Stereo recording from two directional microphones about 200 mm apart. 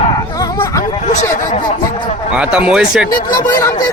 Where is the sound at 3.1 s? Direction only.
20° left (ahead or behind).